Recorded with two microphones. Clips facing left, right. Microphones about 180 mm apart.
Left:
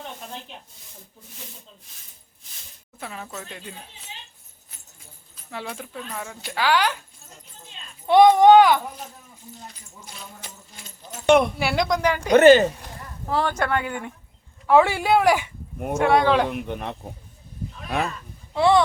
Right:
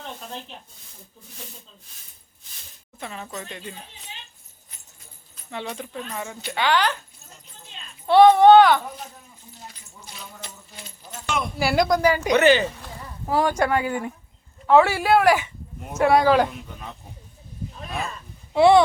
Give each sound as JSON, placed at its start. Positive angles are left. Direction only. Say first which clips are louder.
{"t": 3.0, "sound": "speech", "louder": "right 1 dB", "side_deg": 0}
{"t": 5.5, "sound": "speech", "louder": "right 2 dB", "side_deg": 5}
{"t": 8.0, "sound": "speech", "louder": "right 1 dB", "side_deg": 15}
{"t": 11.3, "sound": "speech", "louder": "left 11 dB", "side_deg": 60}
{"t": 11.6, "sound": "speech", "louder": "right 3 dB", "side_deg": -5}
{"t": 12.4, "sound": "speech", "louder": "left 6 dB", "side_deg": 45}
{"t": 13.2, "sound": "speech", "louder": "right 3 dB", "side_deg": -10}
{"t": 14.7, "sound": "speech", "louder": "right 1 dB", "side_deg": 15}
{"t": 16.0, "sound": "speech", "louder": "right 1 dB", "side_deg": -5}
{"t": 16.5, "sound": "speech", "louder": "left 9 dB", "side_deg": 70}
{"t": 18.5, "sound": "speech", "louder": "right 4 dB", "side_deg": -15}